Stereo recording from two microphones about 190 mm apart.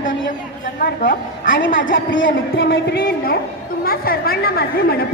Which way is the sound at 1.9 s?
85° left.